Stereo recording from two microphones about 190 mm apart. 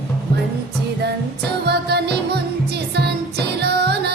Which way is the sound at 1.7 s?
60° right (ahead or behind).